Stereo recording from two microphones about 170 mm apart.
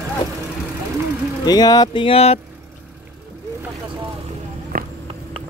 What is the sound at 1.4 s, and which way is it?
Speech, 25° left (ahead or behind).